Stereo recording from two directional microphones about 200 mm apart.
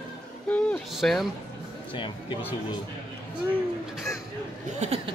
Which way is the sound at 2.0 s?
25° left (ahead or behind).